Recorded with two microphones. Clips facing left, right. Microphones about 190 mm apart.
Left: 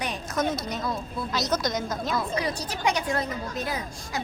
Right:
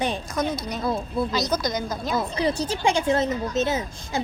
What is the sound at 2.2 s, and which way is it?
A woman's voice, 25° right (ahead or behind).